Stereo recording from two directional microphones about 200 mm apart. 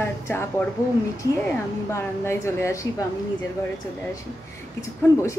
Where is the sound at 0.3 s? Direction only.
10° left (ahead or behind).